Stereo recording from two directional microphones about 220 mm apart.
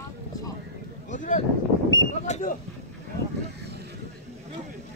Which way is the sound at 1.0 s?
35° left (ahead or behind).